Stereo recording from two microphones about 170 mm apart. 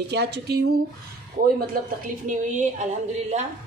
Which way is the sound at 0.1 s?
75° right (ahead or behind).